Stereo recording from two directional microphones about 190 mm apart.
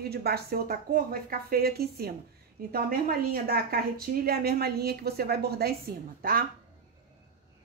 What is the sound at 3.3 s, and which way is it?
A woman's voice, 55° right (ahead or behind).